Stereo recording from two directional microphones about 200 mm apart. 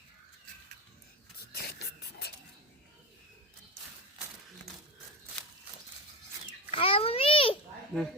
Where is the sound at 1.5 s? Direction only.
55° left (ahead or behind).